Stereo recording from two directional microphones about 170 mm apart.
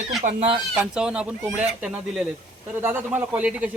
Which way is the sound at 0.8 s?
5° right (ahead or behind).